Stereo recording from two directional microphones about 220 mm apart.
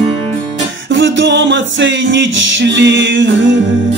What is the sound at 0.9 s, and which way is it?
Music, 55° right (ahead or behind).